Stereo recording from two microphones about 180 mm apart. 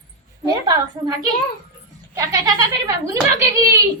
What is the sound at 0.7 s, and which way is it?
Speech, 20° right (ahead or behind).